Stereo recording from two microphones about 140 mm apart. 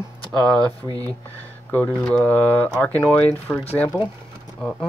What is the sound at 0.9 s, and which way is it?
Speech, 30° right (ahead or behind).